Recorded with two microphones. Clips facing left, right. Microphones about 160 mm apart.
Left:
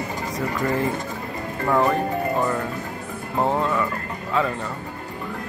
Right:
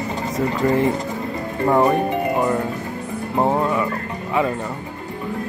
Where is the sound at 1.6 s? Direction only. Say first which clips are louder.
Right 4 dB; 20° right (ahead or behind).